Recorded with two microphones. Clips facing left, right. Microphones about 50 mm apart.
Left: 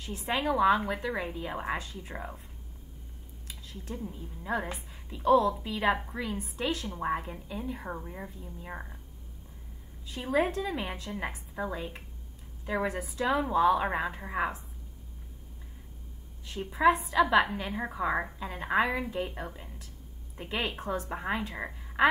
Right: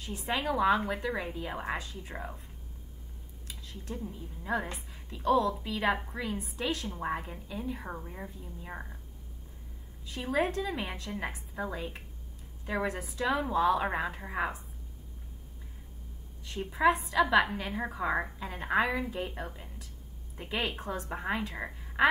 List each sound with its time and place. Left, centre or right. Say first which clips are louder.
0.0 s a woman's voice: left 2 dB; centre
3.4 s a sound: even; centre
4.2 s a woman's voice: even; centre
10.1 s a woman's voice: left 2 dB; centre
16.4 s a woman's voice: left 2 dB; centre